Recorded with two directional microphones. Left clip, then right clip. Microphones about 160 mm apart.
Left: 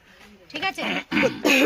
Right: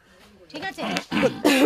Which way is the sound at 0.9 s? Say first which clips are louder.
Right 1 dB; 90° right.